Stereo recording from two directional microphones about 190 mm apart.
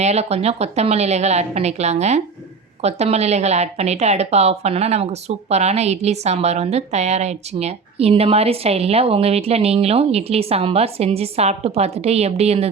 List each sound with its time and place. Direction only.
0.0 s a woman's voice: 35° right (ahead or behind)